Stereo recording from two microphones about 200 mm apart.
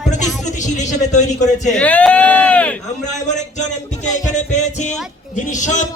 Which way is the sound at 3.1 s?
35° left (ahead or behind).